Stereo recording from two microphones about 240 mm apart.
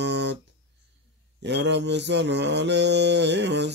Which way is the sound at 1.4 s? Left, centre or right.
Right.